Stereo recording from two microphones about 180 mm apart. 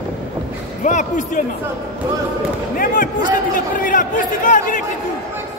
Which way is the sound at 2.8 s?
50° left (ahead or behind).